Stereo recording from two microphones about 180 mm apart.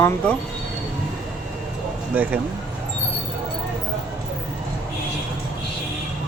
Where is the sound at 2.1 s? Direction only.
10° right (ahead or behind).